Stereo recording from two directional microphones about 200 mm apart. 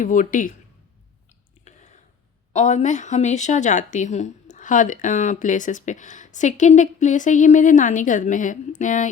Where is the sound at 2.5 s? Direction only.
35° left (ahead or behind).